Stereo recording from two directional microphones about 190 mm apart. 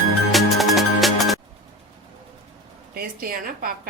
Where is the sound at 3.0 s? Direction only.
50° right (ahead or behind).